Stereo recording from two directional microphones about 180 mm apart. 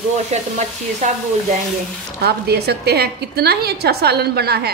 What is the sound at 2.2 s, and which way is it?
A woman's voice, 65° right (ahead or behind).